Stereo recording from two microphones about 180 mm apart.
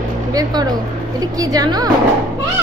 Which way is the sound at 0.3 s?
20° right (ahead or behind).